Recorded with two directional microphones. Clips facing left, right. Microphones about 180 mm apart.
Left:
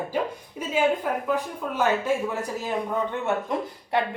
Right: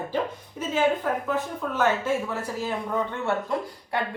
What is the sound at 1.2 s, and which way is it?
A woman's voice, 15° left (ahead or behind).